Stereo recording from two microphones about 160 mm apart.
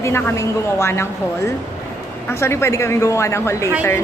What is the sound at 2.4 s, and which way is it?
A woman's voice, 15° left (ahead or behind).